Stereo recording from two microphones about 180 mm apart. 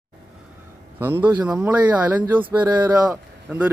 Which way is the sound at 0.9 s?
10° right (ahead or behind).